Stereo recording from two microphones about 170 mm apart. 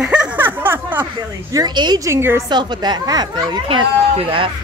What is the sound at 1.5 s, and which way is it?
Speech, 25° right (ahead or behind).